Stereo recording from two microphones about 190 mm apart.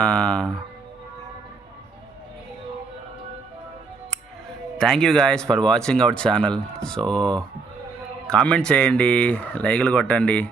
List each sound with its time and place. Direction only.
0.0 s speech: 5° left (ahead or behind)
4.8 s speech: 5° left (ahead or behind)